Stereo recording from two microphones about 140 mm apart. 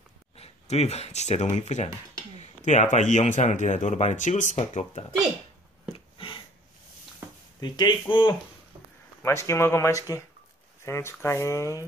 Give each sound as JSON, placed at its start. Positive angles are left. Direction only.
{"t": 0.4, "sound": "speech", "side_deg": 50}
{"t": 5.9, "sound": "a sound", "side_deg": 35}
{"t": 7.6, "sound": "speech", "side_deg": 30}
{"t": 9.2, "sound": "speech", "side_deg": 20}